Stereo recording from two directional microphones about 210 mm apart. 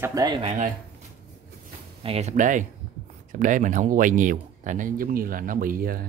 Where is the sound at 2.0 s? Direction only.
30° right (ahead or behind).